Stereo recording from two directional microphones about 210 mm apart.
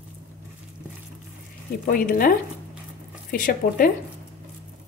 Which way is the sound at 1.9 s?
40° left (ahead or behind).